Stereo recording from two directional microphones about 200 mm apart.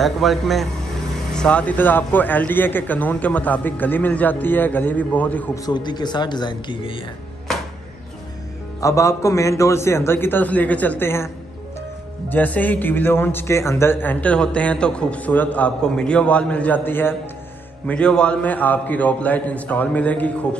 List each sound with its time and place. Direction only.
0.0 s a man's voice: centre (ahead or behind)
5.7 s speech: 20° left (ahead or behind)
8.8 s a man's voice: 15° left (ahead or behind)